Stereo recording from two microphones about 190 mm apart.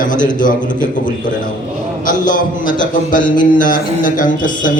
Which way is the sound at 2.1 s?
45° left (ahead or behind).